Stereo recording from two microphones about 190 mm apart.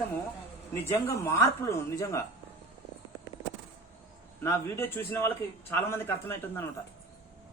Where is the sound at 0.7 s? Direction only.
15° left (ahead or behind).